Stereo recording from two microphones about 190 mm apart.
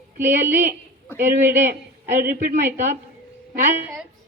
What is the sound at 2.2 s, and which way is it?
Speech, 45° right (ahead or behind).